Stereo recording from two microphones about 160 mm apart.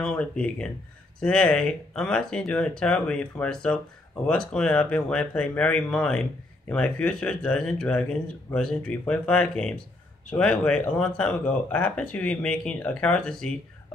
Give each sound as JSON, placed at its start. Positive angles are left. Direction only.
{"t": 0.0, "sound": "speech", "side_deg": 5}